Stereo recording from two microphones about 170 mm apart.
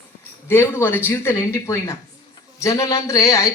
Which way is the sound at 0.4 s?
15° left (ahead or behind).